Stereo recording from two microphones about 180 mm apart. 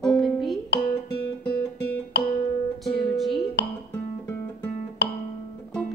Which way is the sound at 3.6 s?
70° left (ahead or behind).